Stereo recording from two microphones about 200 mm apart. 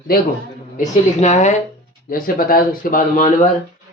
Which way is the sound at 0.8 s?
35° left (ahead or behind).